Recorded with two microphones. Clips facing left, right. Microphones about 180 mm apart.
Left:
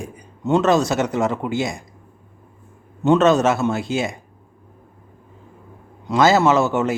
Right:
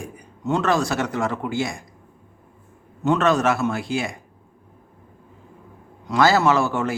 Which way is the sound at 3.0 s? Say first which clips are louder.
Left 4 dB; 25° left (ahead or behind).